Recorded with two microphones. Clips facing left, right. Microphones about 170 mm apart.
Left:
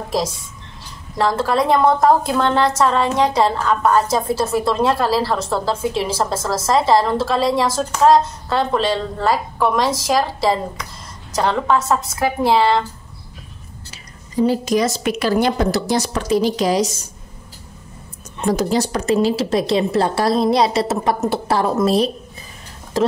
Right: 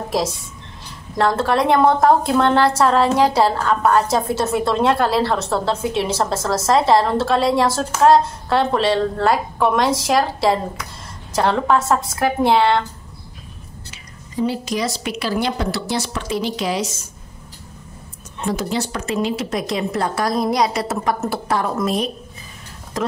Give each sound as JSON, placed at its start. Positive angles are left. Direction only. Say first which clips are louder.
{"t": 0.1, "sound": "a woman's voice", "louder": "even", "side_deg": 0}
{"t": 14.4, "sound": "a woman's voice", "louder": "left 5 dB", "side_deg": 45}
{"t": 18.5, "sound": "a woman's voice", "louder": "left 5 dB", "side_deg": 40}